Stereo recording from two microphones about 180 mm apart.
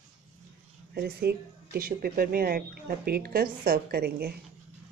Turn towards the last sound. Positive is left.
turn(degrees=-60)  # may be behind; listen again after turning